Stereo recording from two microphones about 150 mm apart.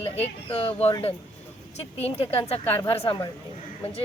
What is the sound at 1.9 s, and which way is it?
A woman's voice, 40° left (ahead or behind).